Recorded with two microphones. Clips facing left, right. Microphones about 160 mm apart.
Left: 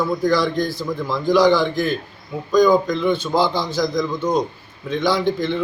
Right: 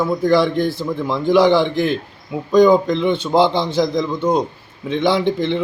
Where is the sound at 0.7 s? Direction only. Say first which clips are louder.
Right 3 dB; 25° right (ahead or behind).